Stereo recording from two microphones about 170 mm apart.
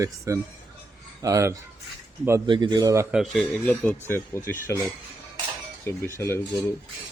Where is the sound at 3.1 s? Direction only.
Centre (ahead or behind).